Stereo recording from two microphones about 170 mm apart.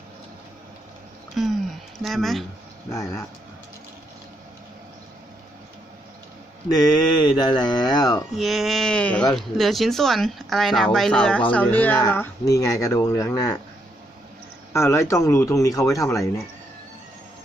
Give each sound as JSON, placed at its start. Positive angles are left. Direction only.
{"t": 1.4, "sound": "a sound", "side_deg": 0}
{"t": 2.0, "sound": "speech", "side_deg": 0}
{"t": 2.9, "sound": "speech", "side_deg": 20}
{"t": 6.7, "sound": "speech", "side_deg": 25}
{"t": 8.4, "sound": "speech", "side_deg": 0}
{"t": 14.7, "sound": "speech", "side_deg": 15}